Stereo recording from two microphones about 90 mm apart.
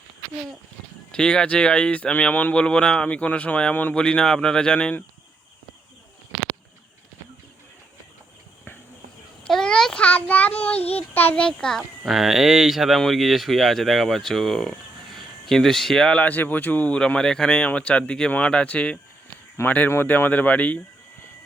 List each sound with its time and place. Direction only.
1.1 s speech: 10° left (ahead or behind)
9.5 s a sound: 5° left (ahead or behind)
10.0 s child singing: 15° left (ahead or behind)
11.1 s a sound: 20° left (ahead or behind)
11.4 s speech: 10° left (ahead or behind)
11.8 s speech: centre (ahead or behind); by 20.8 s 15° left (ahead or behind)